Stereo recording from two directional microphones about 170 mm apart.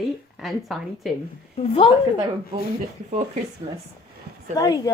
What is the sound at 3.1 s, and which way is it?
Speech, 45° right (ahead or behind).